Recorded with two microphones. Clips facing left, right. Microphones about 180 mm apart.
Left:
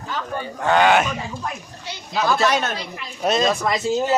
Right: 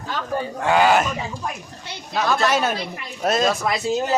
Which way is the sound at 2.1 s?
Centre (ahead or behind).